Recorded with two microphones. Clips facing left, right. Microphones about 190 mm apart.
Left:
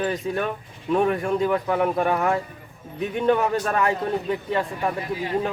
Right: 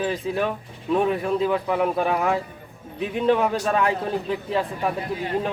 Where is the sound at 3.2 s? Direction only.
Centre (ahead or behind).